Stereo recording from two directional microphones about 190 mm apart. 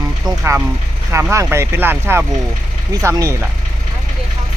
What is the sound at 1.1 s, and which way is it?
Speech, 15° right (ahead or behind).